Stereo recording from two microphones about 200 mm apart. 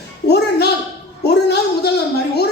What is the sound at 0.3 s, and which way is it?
Music, 55° left (ahead or behind).